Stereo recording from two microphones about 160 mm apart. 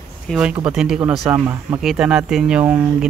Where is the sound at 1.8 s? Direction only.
5° right (ahead or behind).